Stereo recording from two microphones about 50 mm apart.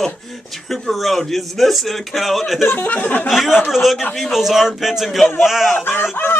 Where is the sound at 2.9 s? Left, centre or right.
Left.